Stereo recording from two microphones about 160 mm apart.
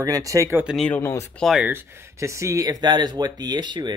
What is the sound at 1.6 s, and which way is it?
Speech, 15° right (ahead or behind).